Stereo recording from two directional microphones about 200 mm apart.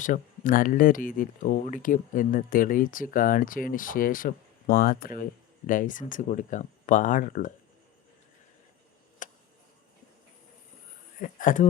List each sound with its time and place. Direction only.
0.0 s speech: 40° left (ahead or behind)
9.2 s a sound: 40° left (ahead or behind)
11.2 s speech: 40° left (ahead or behind)